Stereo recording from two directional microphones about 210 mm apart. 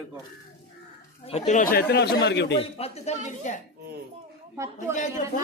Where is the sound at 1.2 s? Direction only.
30° left (ahead or behind); by 2.6 s 55° left (ahead or behind).